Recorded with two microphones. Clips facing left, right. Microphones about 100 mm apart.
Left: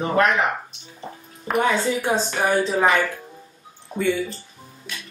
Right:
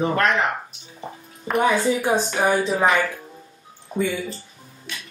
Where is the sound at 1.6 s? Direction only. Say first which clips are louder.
Right 2 dB; 15° right (ahead or behind).